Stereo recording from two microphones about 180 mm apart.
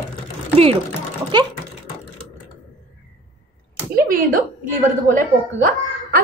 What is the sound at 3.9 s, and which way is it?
A woman's voice, 50° right (ahead or behind).